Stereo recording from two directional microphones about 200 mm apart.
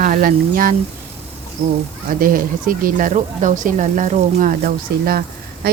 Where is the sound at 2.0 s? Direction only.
45° right (ahead or behind).